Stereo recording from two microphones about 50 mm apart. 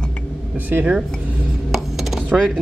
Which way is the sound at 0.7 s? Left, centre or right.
Right.